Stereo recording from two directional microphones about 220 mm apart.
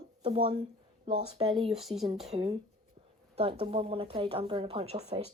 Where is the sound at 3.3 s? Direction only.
25° right (ahead or behind).